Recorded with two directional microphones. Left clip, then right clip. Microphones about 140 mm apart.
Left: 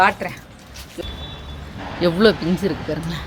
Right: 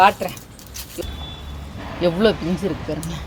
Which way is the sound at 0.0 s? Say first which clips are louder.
Right 2 dB; 25° right (ahead or behind).